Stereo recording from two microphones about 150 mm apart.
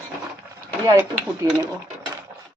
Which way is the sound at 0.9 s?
20° right (ahead or behind).